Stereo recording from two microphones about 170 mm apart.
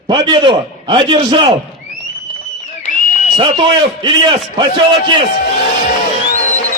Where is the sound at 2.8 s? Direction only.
50° left (ahead or behind).